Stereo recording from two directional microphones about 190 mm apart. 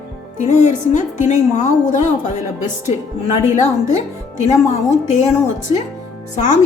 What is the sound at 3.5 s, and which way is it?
Speech, 35° left (ahead or behind).